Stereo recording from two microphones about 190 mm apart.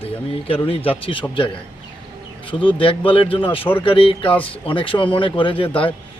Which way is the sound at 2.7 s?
25° left (ahead or behind).